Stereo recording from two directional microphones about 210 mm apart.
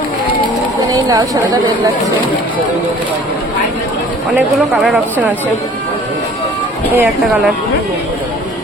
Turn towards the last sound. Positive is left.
turn(degrees=0)  # may be behind; listen again after turning